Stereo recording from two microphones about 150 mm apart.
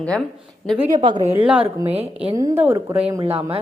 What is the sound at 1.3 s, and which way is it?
Speech, 10° right (ahead or behind).